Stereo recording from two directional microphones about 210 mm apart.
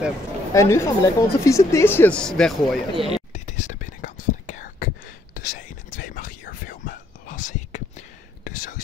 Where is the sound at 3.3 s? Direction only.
35° left (ahead or behind).